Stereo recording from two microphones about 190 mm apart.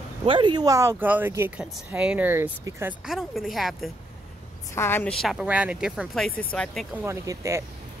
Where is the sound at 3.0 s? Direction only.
Centre (ahead or behind).